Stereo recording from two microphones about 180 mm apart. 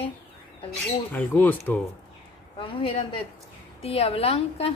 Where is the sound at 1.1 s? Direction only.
10° left (ahead or behind).